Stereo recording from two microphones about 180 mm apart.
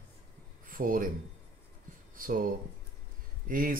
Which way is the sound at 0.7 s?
50° right (ahead or behind).